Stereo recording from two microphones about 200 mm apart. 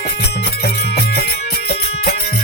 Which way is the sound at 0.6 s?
55° left (ahead or behind).